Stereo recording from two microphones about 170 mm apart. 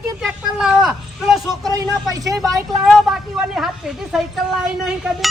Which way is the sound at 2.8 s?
Centre (ahead or behind).